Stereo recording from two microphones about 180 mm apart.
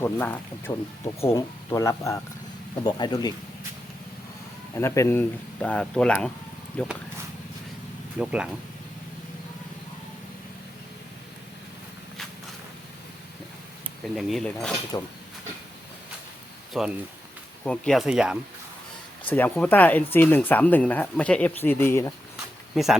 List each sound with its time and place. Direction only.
0.0 s speech: 10° left (ahead or behind)
4.7 s speech: 15° left (ahead or behind)
8.2 s speech: 5° right (ahead or behind)
14.0 s speech: centre (ahead or behind)
14.9 s speech: 25° left (ahead or behind)
16.7 s speech: centre (ahead or behind)
19.3 s speech: 10° left (ahead or behind)
22.7 s speech: centre (ahead or behind)